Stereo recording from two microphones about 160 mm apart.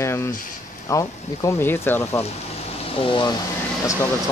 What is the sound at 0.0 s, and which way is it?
Speech, 15° left (ahead or behind).